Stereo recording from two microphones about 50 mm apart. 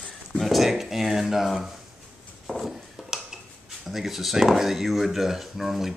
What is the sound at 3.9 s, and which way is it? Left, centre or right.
Speech, centre.